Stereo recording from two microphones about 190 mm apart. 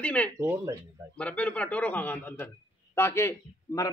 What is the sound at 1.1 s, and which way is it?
A man's voice, 5° left (ahead or behind).